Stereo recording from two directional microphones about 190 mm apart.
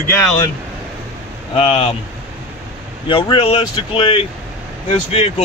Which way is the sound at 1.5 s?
30° left (ahead or behind).